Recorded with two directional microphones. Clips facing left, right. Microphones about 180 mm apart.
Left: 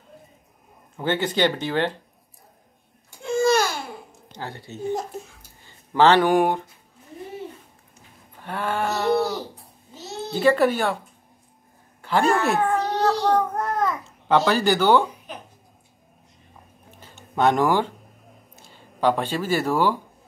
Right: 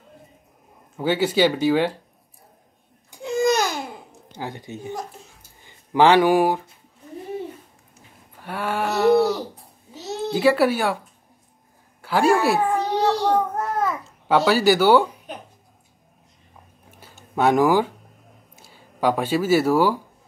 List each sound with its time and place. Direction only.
0.9 s speech: 10° right (ahead or behind)
3.2 s babbling: 15° right (ahead or behind)
4.4 s speech: 15° right (ahead or behind)
8.4 s speech: 10° right (ahead or behind)
10.3 s speech: 10° right (ahead or behind)
12.0 s a sound: 10° right (ahead or behind)
17.0 s a sound: 10° right (ahead or behind)
18.6 s speech: 10° right (ahead or behind)